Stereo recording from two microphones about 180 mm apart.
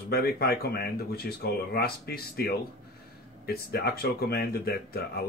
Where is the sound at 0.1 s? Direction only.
60° left (ahead or behind).